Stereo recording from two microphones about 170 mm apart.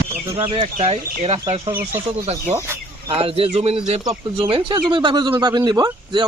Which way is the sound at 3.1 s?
35° right (ahead or behind).